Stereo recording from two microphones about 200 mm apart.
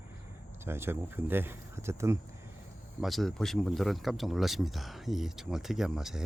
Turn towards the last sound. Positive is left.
turn(degrees=0)  # may be behind; listen again after turning